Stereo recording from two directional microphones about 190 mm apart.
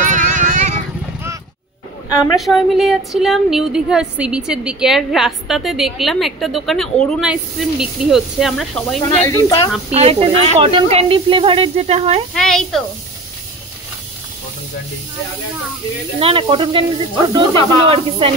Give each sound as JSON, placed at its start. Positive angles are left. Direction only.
{"t": 0.0, "sound": "vehicle", "side_deg": -40}
{"t": 2.3, "sound": "speech", "side_deg": 0}
{"t": 9.9, "sound": "speech", "side_deg": -30}
{"t": 12.4, "sound": "speech", "side_deg": 5}
{"t": 16.2, "sound": "speech", "side_deg": -30}